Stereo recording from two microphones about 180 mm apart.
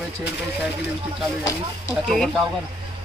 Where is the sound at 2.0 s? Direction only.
5° left (ahead or behind).